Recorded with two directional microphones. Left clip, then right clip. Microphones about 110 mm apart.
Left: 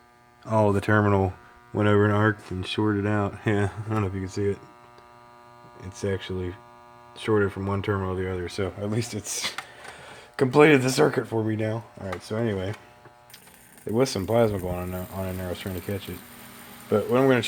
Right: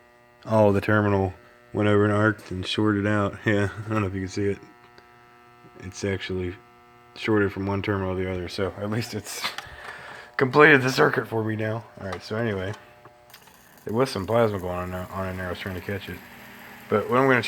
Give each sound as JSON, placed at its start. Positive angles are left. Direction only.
{"t": 0.4, "sound": "speech", "side_deg": -5}
{"t": 0.9, "sound": "speech", "side_deg": 40}
{"t": 1.7, "sound": "speech", "side_deg": 20}
{"t": 2.5, "sound": "speech", "side_deg": -5}
{"t": 4.2, "sound": "speech", "side_deg": -10}
{"t": 5.8, "sound": "speech", "side_deg": -20}
{"t": 8.8, "sound": "speech", "side_deg": 25}
{"t": 9.9, "sound": "speech", "side_deg": 55}
{"t": 12.5, "sound": "speech", "side_deg": 40}
{"t": 13.9, "sound": "speech", "side_deg": 45}